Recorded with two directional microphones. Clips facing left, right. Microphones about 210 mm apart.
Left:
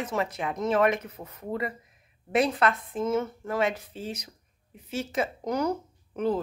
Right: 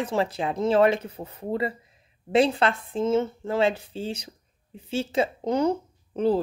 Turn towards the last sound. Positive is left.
turn(degrees=-30)  # may be behind; listen again after turning